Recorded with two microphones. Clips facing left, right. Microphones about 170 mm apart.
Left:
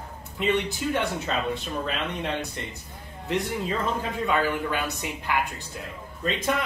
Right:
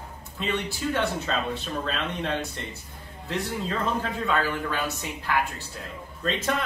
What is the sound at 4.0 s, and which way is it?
Speech, 15° left (ahead or behind).